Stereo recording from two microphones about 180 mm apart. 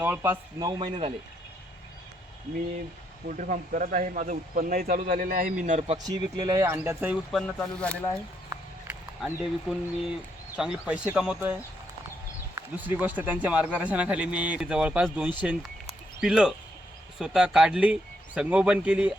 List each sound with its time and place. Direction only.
0.0 s speech: 10° right (ahead or behind); by 1.1 s 30° right (ahead or behind)
3.2 s speech: 45° right (ahead or behind)
6.0 s a man's voice: 20° right (ahead or behind)
7.3 s speech: 5° left (ahead or behind)
8.4 s a sound: 10° right (ahead or behind)
10.6 s a man's voice: 5° right (ahead or behind)
15.9 s a sound: 5° right (ahead or behind)
17.2 s a man's voice: 5° right (ahead or behind)